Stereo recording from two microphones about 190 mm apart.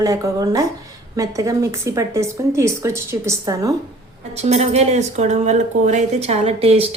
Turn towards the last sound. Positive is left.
turn(degrees=-30)  # may be behind; listen again after turning